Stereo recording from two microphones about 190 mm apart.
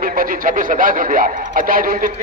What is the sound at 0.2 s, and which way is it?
A man's voice, 45° right (ahead or behind).